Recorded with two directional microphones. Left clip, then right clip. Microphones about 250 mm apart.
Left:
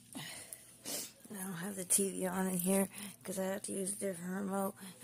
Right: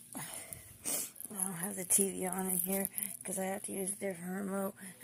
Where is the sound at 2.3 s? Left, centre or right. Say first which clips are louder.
Left 3 dB; centre.